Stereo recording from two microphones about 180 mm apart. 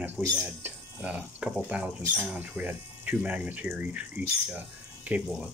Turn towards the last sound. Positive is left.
turn(degrees=-5)  # may be behind; listen again after turning